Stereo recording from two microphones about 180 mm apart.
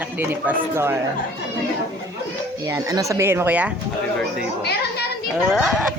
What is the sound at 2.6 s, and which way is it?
Speech, 20° right (ahead or behind).